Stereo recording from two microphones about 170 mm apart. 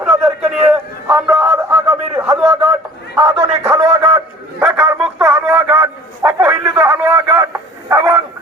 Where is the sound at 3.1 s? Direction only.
25° right (ahead or behind).